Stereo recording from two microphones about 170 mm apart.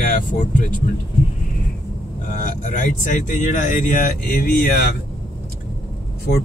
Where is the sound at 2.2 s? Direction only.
50° left (ahead or behind).